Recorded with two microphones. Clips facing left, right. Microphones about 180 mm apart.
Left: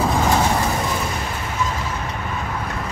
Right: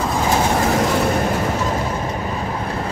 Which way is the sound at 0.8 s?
55° right (ahead or behind).